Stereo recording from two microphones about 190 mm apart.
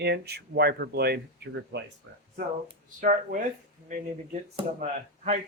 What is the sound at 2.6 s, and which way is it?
Speech, 50° right (ahead or behind).